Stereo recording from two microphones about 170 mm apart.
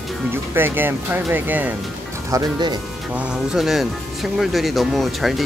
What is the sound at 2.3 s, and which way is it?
Speech, 25° right (ahead or behind).